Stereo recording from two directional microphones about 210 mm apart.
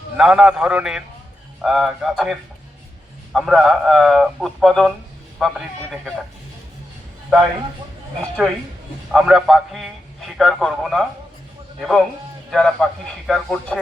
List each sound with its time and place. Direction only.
0.2 s a man's voice: 5° right (ahead or behind)
3.3 s a man's voice: centre (ahead or behind)
9.1 s a man's voice: centre (ahead or behind)